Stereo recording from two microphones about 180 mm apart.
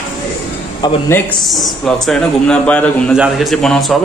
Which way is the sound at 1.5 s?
Centre (ahead or behind).